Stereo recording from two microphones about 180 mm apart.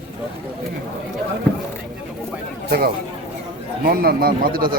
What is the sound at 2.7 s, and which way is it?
A man's voice, 60° right (ahead or behind).